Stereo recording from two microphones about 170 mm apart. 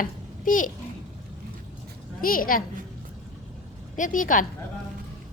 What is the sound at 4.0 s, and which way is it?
Speech, 50° left (ahead or behind).